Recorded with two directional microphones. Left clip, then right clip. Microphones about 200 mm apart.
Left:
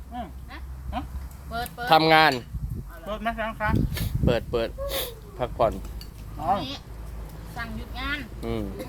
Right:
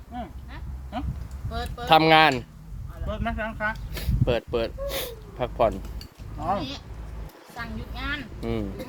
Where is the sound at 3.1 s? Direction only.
10° left (ahead or behind).